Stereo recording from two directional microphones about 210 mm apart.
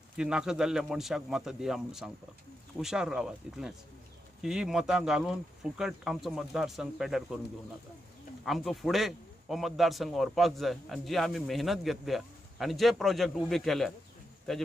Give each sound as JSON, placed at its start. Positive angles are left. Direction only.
{"t": 0.2, "sound": "a man's voice", "side_deg": -5}
{"t": 8.5, "sound": "a man's voice", "side_deg": 0}